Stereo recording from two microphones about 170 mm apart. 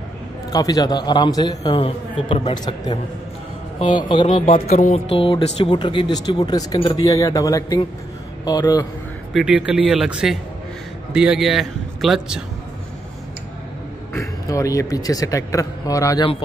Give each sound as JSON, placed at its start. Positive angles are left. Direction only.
{"t": 0.5, "sound": "speech", "side_deg": 20}
{"t": 1.8, "sound": "a man's voice", "side_deg": 35}
{"t": 4.6, "sound": "music", "side_deg": 55}
{"t": 4.9, "sound": "speech", "side_deg": 35}
{"t": 9.3, "sound": "a man's voice", "side_deg": -5}
{"t": 14.1, "sound": "speech", "side_deg": 20}